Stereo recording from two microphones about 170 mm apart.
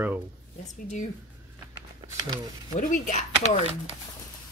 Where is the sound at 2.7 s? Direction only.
45° left (ahead or behind).